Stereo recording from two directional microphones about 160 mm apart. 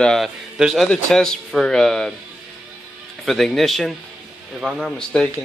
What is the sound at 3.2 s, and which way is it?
A man's voice, centre (ahead or behind).